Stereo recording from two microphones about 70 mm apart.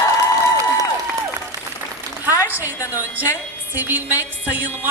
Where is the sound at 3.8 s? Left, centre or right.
Right.